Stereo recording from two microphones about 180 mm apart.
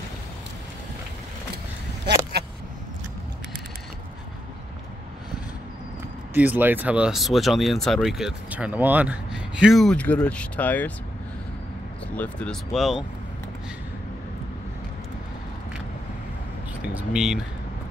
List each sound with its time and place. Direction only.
2.1 s vehicle: 70° right (ahead or behind)
6.3 s speech: 10° right (ahead or behind); by 10.9 s 10° left (ahead or behind)
12.2 s speech: 5° left (ahead or behind)
16.8 s speech: 5° right (ahead or behind)